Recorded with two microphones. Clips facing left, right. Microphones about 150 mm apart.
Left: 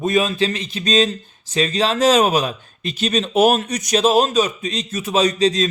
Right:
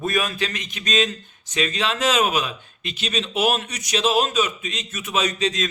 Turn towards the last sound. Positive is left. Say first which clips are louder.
# left 7 dB
turn(degrees=35)  # may be behind; listen again after turning